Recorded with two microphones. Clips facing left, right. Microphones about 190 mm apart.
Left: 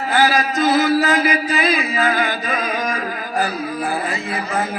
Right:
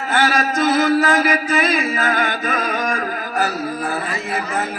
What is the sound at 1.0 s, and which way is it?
Music, 45° right (ahead or behind).